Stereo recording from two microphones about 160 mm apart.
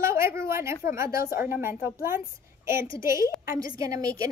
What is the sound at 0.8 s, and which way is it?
A woman's voice, 20° right (ahead or behind).